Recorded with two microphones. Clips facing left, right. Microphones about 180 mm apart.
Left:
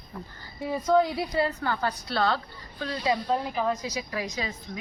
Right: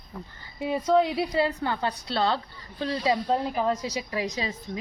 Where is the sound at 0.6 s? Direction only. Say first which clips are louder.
Right 1 dB; 25° right (ahead or behind).